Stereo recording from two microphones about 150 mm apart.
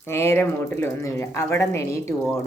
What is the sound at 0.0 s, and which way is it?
Speech, 15° left (ahead or behind).